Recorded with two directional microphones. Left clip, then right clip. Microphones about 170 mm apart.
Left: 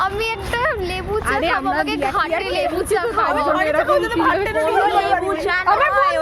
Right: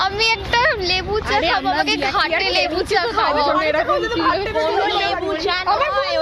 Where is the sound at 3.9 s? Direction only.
90° left.